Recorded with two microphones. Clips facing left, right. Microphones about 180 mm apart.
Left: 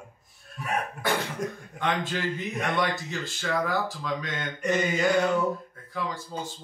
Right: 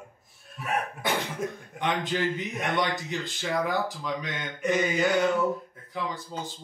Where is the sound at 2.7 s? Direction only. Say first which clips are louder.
Right 1 dB; 20° right (ahead or behind).